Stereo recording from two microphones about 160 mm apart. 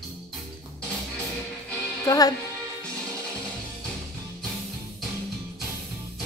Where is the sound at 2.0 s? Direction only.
25° left (ahead or behind).